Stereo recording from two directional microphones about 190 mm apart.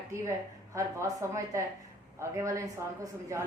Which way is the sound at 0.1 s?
15° right (ahead or behind).